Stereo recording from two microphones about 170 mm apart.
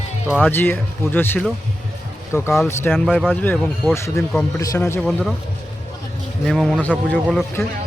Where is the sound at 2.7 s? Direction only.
15° left (ahead or behind).